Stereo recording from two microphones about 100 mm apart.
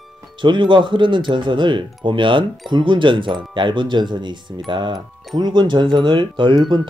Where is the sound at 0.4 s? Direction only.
50° right (ahead or behind).